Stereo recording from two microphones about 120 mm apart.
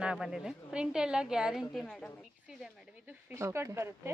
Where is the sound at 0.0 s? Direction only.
5° right (ahead or behind).